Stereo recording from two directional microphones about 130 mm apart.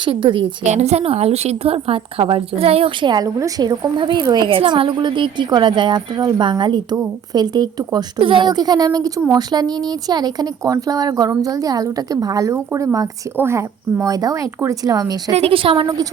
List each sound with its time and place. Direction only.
0.0 s a woman's voice: 40° right (ahead or behind)
0.6 s a woman's voice: 60° right (ahead or behind); by 15.2 s 30° right (ahead or behind)
15.4 s a woman's voice: 45° right (ahead or behind)